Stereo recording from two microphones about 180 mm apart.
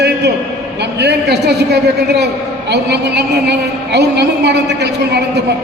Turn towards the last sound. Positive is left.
turn(degrees=-70)  # may be behind; listen again after turning